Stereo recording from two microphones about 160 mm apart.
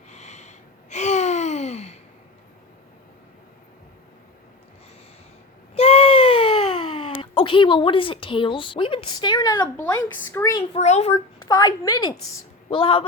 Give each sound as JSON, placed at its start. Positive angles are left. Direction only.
{"t": 0.1, "sound": "gasp", "side_deg": 45}
{"t": 5.7, "sound": "baby cry", "side_deg": 35}
{"t": 10.3, "sound": "a woman's voice", "side_deg": 20}
{"t": 10.8, "sound": "a child's voice", "side_deg": 45}
{"t": 11.4, "sound": "a woman's voice", "side_deg": 25}